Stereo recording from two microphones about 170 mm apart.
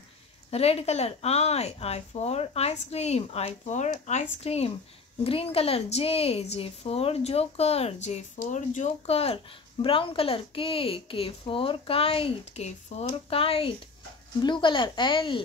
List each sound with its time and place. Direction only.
0.5 s speech: 35° left (ahead or behind)